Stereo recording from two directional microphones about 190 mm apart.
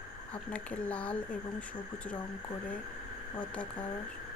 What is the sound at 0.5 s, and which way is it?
Speech, 5° left (ahead or behind).